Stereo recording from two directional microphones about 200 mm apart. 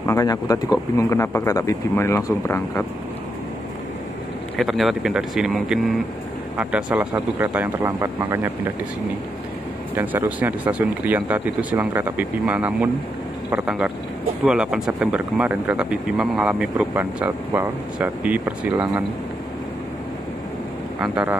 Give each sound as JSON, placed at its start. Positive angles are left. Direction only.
{"t": 0.0, "sound": "speech", "side_deg": 15}
{"t": 4.6, "sound": "speech", "side_deg": 0}
{"t": 9.9, "sound": "speech", "side_deg": -10}
{"t": 21.0, "sound": "speech", "side_deg": -5}